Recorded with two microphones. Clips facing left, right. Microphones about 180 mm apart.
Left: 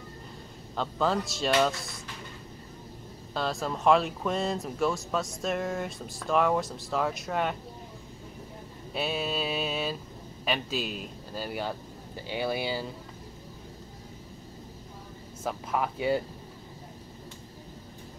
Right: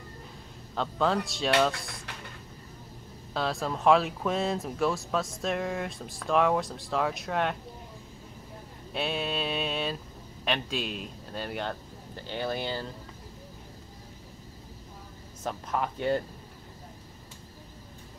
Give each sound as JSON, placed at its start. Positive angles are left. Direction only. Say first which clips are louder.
{"t": 0.7, "sound": "speech", "louder": "even", "side_deg": 0}
{"t": 3.3, "sound": "speech", "louder": "even", "side_deg": 0}
{"t": 8.9, "sound": "a sound", "louder": "even", "side_deg": 0}
{"t": 10.4, "sound": "a man's voice", "louder": "even", "side_deg": 5}
{"t": 15.4, "sound": "speech", "louder": "left 1 dB", "side_deg": 5}